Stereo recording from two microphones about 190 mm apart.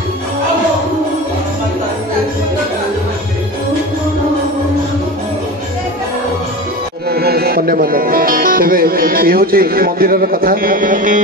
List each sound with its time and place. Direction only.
7.1 s speech: 55° right (ahead or behind)